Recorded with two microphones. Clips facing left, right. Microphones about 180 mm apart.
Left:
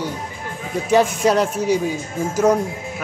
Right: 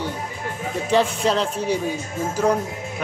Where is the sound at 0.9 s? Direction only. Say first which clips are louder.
Left 4 dB; 10° left (ahead or behind).